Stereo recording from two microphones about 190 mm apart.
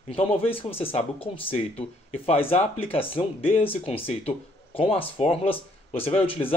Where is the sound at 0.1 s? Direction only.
30° left (ahead or behind).